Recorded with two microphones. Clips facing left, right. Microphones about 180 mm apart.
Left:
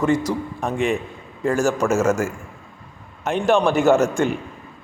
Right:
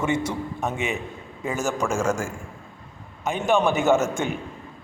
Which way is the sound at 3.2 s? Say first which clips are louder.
Left 3 dB; centre (ahead or behind).